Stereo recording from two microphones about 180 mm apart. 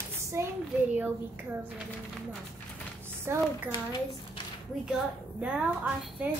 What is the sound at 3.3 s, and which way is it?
Speech, 15° right (ahead or behind).